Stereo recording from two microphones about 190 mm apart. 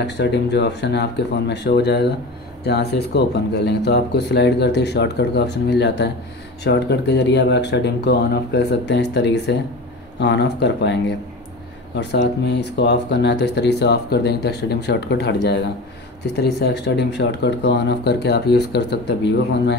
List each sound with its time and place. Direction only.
0.0 s speech: 65° left (ahead or behind)